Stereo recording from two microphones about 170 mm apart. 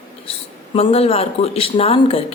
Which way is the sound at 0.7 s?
35° left (ahead or behind).